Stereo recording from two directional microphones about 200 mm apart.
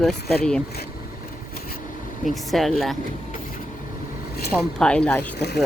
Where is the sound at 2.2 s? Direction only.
Centre (ahead or behind).